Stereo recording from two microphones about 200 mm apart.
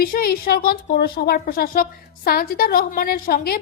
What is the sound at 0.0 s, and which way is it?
Speech, 45° left (ahead or behind).